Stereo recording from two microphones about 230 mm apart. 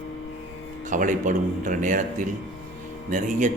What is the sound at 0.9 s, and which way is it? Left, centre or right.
A man's voice, right.